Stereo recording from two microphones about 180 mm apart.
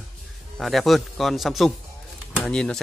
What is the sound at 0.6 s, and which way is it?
Speech, centre (ahead or behind).